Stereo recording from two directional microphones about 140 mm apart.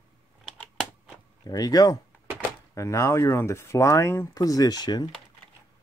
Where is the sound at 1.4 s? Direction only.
25° left (ahead or behind).